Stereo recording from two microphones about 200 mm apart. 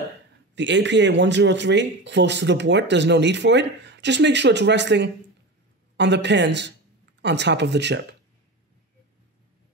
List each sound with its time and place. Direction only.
0.6 s speech: 60° right (ahead or behind)